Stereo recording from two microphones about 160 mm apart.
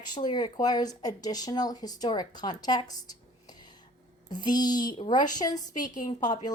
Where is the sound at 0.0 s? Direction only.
25° left (ahead or behind).